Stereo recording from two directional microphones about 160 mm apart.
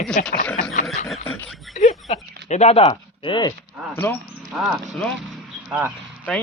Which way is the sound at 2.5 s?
40° left (ahead or behind).